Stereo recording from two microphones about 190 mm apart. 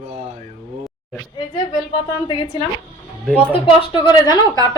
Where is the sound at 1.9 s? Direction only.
25° left (ahead or behind).